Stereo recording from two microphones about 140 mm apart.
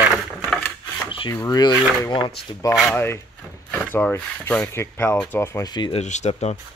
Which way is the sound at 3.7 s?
15° left (ahead or behind).